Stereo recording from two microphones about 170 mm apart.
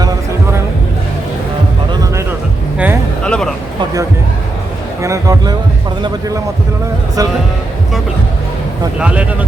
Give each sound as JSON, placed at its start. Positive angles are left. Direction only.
{"t": 2.7, "sound": "music", "side_deg": -10}
{"t": 3.2, "sound": "a sound", "side_deg": 5}
{"t": 5.0, "sound": "music", "side_deg": -20}
{"t": 7.2, "sound": "music", "side_deg": -20}
{"t": 9.0, "sound": "speech", "side_deg": -5}